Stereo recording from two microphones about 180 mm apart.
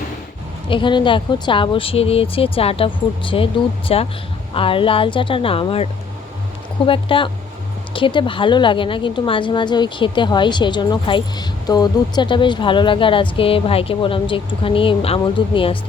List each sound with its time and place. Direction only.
0.7 s a woman's voice: 25° left (ahead or behind)